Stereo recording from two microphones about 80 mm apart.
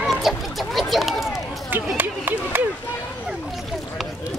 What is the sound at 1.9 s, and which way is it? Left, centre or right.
Speech, right.